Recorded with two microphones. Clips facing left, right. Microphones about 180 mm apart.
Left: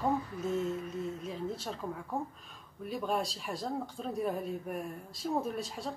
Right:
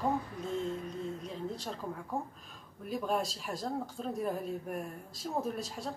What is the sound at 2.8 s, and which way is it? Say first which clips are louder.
Speech: even; centre (ahead or behind).